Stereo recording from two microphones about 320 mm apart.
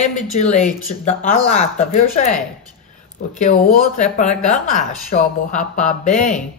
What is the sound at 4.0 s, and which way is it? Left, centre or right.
Speech, left.